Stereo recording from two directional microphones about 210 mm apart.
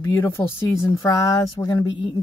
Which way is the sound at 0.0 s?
15° left (ahead or behind).